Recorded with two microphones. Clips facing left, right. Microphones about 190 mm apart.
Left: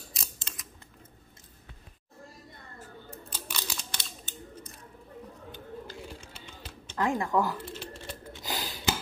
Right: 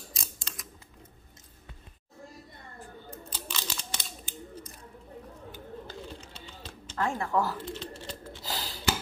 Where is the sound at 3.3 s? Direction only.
10° left (ahead or behind).